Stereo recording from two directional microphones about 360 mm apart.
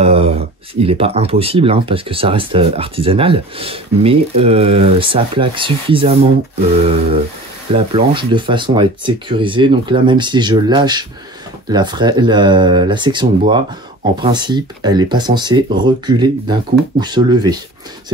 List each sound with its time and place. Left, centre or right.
0.0 s speech: centre